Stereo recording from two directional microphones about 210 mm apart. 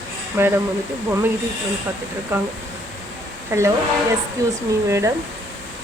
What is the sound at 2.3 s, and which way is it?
Speech, 10° right (ahead or behind).